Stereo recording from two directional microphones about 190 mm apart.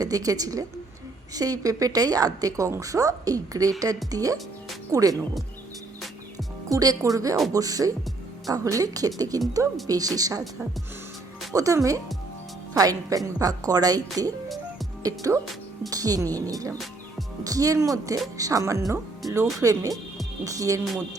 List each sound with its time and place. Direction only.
0.0 s speech: 20° right (ahead or behind)
6.7 s speech: 20° right (ahead or behind)
11.5 s speech: 15° right (ahead or behind)